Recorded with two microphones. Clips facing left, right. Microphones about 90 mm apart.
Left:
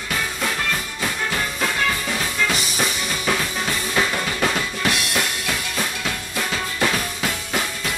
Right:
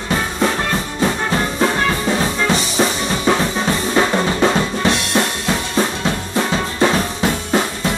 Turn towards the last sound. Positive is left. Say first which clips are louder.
# right 7 dB
turn(degrees=-30)  # may be behind; listen again after turning